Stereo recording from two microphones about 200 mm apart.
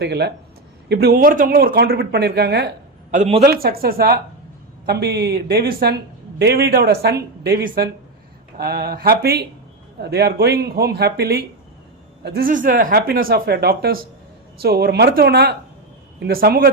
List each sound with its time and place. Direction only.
0.0 s speech: 55° right (ahead or behind)
3.1 s speech: 35° right (ahead or behind)
3.4 s speech: 50° right (ahead or behind)